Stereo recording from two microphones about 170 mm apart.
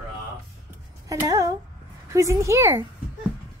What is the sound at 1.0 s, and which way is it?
Music, 20° right (ahead or behind).